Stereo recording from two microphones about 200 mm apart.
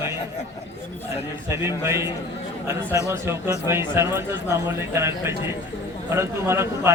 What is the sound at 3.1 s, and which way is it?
A man's voice, 15° right (ahead or behind).